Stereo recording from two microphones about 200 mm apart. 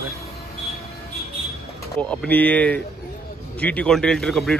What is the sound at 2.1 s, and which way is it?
A man's voice, 5° left (ahead or behind).